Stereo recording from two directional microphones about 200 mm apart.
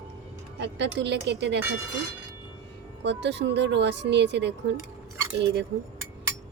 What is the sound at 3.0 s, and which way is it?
A woman's voice, 60° right (ahead or behind).